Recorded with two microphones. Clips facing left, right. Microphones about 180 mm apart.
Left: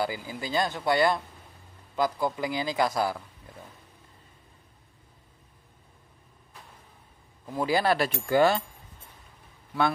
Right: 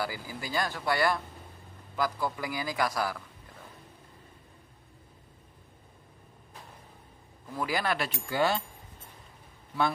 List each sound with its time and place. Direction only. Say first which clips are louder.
0.0 s speech: left 4 dB; 20° left (ahead or behind)
7.5 s speech: left 6 dB; 30° left (ahead or behind); by 8.5 s 50° left (ahead or behind)